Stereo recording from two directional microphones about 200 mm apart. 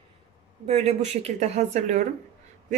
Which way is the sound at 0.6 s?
30° right (ahead or behind).